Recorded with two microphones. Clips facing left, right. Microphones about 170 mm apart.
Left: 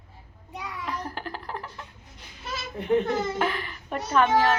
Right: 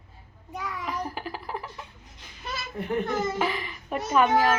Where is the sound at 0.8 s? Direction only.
5° right (ahead or behind).